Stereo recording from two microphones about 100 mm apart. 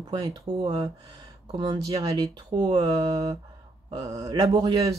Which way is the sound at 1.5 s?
55° right (ahead or behind).